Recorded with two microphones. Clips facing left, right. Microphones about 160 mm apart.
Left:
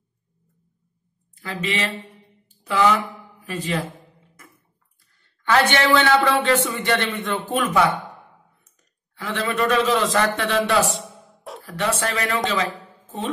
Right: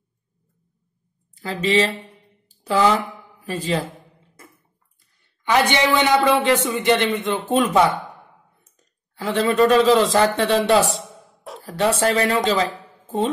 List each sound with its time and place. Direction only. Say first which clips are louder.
1.4 s a man's voice: right 7 dB; 30° right (ahead or behind)
2.4 s a sound: right 1 dB; 35° right (ahead or behind)
3.4 s a man's voice: right 3 dB; 35° right (ahead or behind)
5.2 s a man's voice: even; 15° right (ahead or behind)
9.1 s a man's voice: right 6 dB; 35° right (ahead or behind)